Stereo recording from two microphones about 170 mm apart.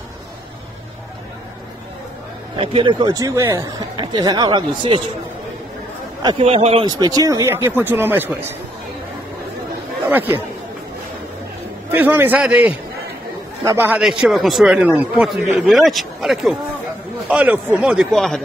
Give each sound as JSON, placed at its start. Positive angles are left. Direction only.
{"t": 2.6, "sound": "speech", "side_deg": -30}
{"t": 6.2, "sound": "a man's voice", "side_deg": -30}
{"t": 6.9, "sound": "speech", "side_deg": -25}
{"t": 10.0, "sound": "speech", "side_deg": -10}
{"t": 11.9, "sound": "speech", "side_deg": -10}